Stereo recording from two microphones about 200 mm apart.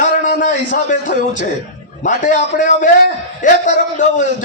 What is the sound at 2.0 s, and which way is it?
Speech, 40° left (ahead or behind).